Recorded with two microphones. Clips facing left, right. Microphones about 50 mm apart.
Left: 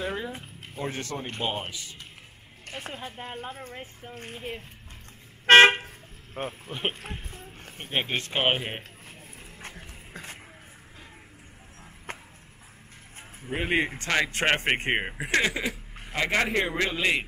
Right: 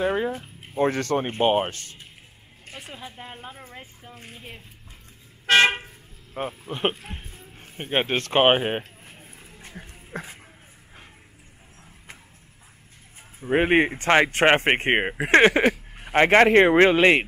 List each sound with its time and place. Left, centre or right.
0.0 s speech: right
0.7 s speech: right
1.4 s speech: right
3.2 s speech: centre
4.1 s speech: left
5.5 s toot: left
6.7 s speech: right
7.3 s a sound: left
7.7 s speech: right
9.0 s a sound: right
10.1 s speech: right
12.1 s music: left
13.4 s speech: right
15.3 s speech: right